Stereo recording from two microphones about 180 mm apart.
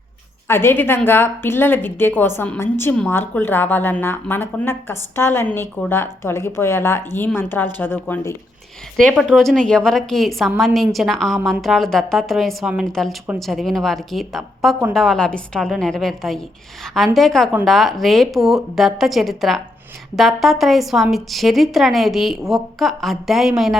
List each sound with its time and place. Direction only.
0.4 s a woman's voice: 15° left (ahead or behind)